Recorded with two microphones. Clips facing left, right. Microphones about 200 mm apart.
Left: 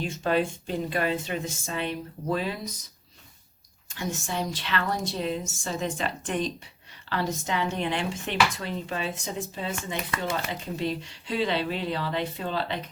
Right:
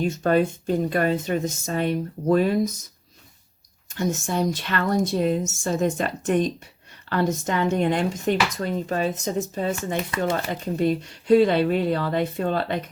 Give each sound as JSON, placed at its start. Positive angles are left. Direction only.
{"t": 0.0, "sound": "speech", "side_deg": -45}
{"t": 3.8, "sound": "speech", "side_deg": -45}